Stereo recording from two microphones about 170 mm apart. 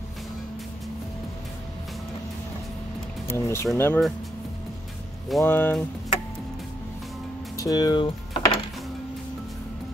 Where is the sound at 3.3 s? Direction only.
15° left (ahead or behind).